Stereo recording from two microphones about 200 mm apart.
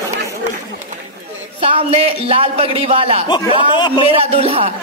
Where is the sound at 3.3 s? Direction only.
25° left (ahead or behind).